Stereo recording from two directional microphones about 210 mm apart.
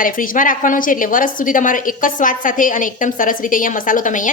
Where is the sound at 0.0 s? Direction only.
40° left (ahead or behind).